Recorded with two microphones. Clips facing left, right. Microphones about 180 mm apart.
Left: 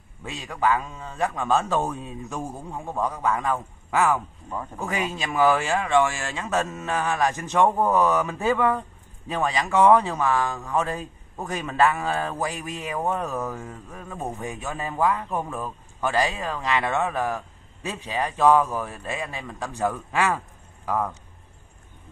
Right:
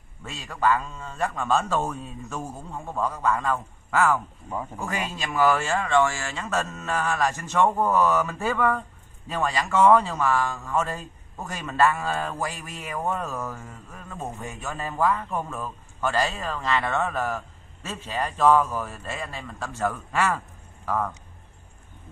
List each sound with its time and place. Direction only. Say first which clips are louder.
0.2 s a man's voice: even; 15° left (ahead or behind)